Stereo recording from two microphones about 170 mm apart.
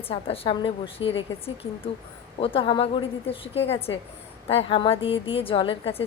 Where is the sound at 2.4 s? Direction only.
30° left (ahead or behind).